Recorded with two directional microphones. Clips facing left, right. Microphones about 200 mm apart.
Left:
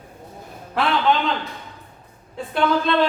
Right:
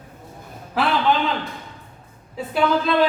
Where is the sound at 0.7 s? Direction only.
Centre (ahead or behind).